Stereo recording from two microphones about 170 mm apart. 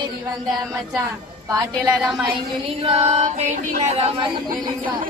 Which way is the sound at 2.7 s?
35° right (ahead or behind).